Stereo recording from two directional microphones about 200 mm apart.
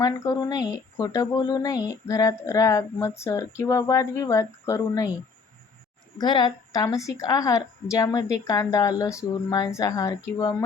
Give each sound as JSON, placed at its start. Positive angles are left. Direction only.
{"t": 0.0, "sound": "speech", "side_deg": 20}
{"t": 6.1, "sound": "speech", "side_deg": 20}